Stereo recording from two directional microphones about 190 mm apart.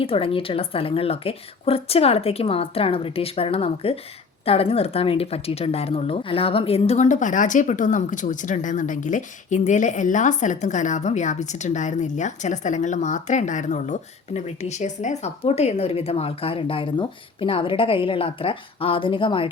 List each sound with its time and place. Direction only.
0.0 s a woman's voice: 30° left (ahead or behind)